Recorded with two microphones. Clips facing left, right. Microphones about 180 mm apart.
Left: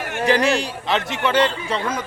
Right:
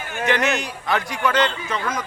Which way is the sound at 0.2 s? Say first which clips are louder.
Left 3 dB; 35° left (ahead or behind).